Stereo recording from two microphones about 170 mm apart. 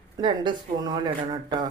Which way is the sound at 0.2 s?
25° right (ahead or behind).